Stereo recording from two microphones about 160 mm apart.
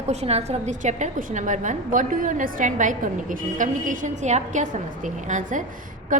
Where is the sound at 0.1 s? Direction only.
40° right (ahead or behind).